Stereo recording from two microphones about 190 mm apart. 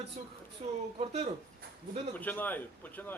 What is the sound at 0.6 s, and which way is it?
Speech, 35° right (ahead or behind).